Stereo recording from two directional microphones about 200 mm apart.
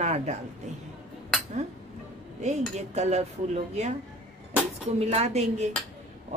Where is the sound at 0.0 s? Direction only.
35° right (ahead or behind).